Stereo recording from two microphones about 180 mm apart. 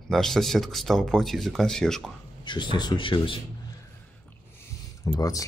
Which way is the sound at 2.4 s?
25° left (ahead or behind).